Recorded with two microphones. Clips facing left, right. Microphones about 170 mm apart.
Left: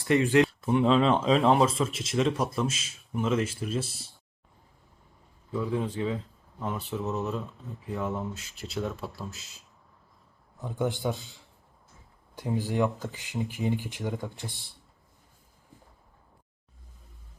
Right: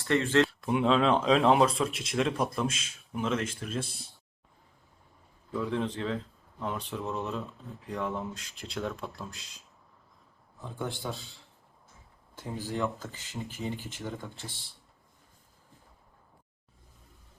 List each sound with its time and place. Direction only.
0.0 s speech: 15° left (ahead or behind)
0.4 s speech: centre (ahead or behind)
5.5 s speech: 5° left (ahead or behind)
10.6 s speech: 20° left (ahead or behind)
12.4 s speech: 15° left (ahead or behind)